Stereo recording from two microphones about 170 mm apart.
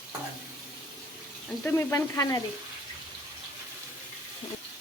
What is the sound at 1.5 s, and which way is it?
Speech, 15° left (ahead or behind).